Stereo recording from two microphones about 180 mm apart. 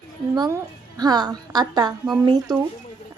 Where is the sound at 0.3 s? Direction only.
20° right (ahead or behind).